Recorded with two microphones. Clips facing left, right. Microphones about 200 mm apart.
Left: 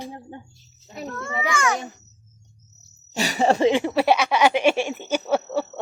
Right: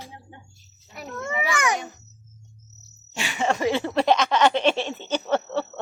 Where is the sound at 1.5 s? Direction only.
15° right (ahead or behind).